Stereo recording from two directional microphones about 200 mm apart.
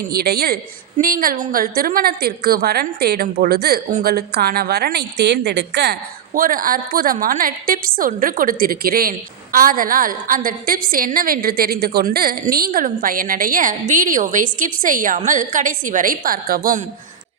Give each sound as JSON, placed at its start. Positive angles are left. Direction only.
{"t": 0.1, "sound": "a woman's voice", "side_deg": -50}